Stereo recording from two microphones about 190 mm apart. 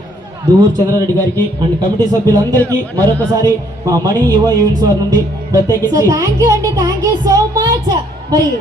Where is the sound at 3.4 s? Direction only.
15° right (ahead or behind).